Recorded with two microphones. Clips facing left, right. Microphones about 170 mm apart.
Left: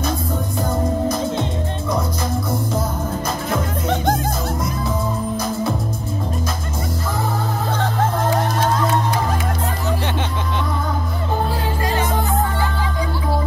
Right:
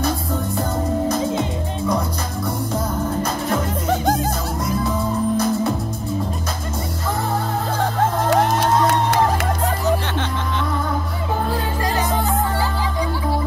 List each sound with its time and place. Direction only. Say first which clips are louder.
8.3 s music: right 2 dB; 75° right (ahead or behind)